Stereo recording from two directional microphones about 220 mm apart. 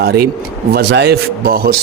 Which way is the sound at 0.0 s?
45° right (ahead or behind).